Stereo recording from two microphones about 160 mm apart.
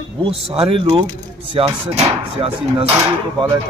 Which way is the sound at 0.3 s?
35° right (ahead or behind).